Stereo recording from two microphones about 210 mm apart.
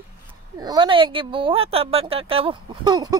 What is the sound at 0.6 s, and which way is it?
Speech, 20° right (ahead or behind).